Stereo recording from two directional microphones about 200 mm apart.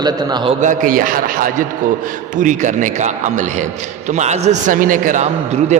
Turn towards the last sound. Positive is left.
turn(degrees=-35)  # may be behind; listen again after turning